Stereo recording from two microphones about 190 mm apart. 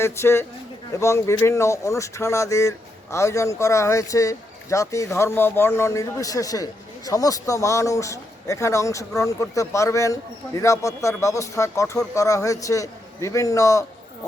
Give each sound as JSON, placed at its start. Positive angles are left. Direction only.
{"t": 0.0, "sound": "speech", "side_deg": 15}